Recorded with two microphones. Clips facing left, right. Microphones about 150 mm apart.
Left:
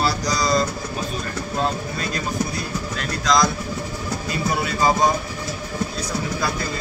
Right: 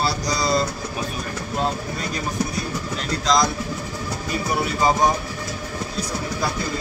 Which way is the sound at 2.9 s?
20° right (ahead or behind).